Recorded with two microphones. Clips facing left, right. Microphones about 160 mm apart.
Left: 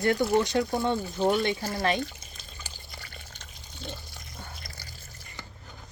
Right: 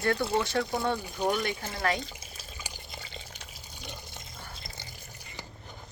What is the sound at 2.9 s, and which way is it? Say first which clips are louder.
Water: right 3 dB; 20° right (ahead or behind).